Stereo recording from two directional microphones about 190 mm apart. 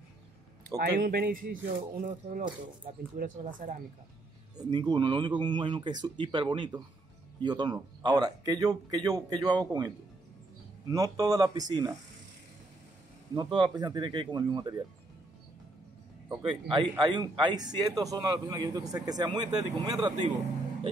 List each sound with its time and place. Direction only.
0.7 s speech: 55° right (ahead or behind)
4.6 s speech: 20° right (ahead or behind)
13.3 s speech: 25° right (ahead or behind)
16.4 s speech: 25° right (ahead or behind)